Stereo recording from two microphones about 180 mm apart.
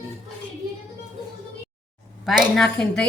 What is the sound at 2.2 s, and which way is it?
Speech, centre (ahead or behind).